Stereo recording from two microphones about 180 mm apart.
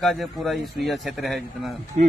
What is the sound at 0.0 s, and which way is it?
A man's voice, centre (ahead or behind).